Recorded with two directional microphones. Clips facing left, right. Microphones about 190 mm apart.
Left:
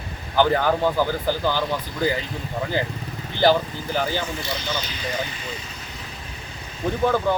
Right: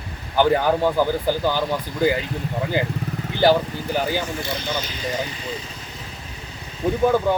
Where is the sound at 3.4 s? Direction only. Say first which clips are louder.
Right 1 dB; 10° right (ahead or behind).